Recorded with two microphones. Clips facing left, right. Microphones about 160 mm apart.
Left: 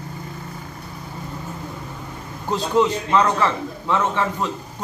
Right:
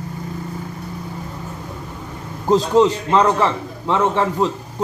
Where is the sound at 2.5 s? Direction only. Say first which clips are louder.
Right 5 dB; 35° right (ahead or behind).